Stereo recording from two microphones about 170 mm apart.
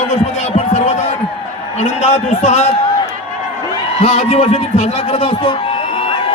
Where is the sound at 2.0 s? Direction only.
45° left (ahead or behind).